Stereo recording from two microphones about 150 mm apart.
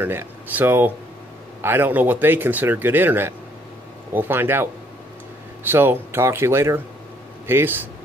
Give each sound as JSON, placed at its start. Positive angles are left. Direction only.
{"t": 0.0, "sound": "speech", "side_deg": -15}